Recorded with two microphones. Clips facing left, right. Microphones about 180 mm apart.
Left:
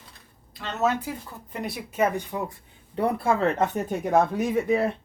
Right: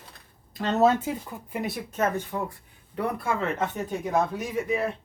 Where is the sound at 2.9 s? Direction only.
30° left (ahead or behind).